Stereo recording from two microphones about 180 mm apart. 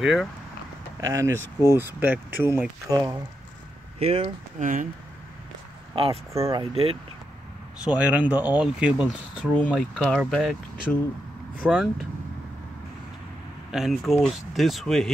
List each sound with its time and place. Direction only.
0.0 s speech: 5° right (ahead or behind)
1.0 s speech: 15° right (ahead or behind)
4.0 s speech: 35° right (ahead or behind)
5.9 s speech: 30° right (ahead or behind)
6.3 s speech: 15° right (ahead or behind)
6.6 s speech: 30° right (ahead or behind)
7.8 s speech: 5° right (ahead or behind)
11.7 s speech: centre (ahead or behind)
13.7 s speech: centre (ahead or behind)